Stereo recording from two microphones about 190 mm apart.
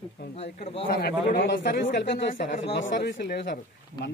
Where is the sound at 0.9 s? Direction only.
55° left (ahead or behind).